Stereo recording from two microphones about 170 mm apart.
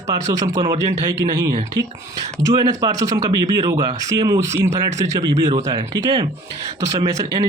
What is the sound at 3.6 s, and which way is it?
Speech, 25° right (ahead or behind).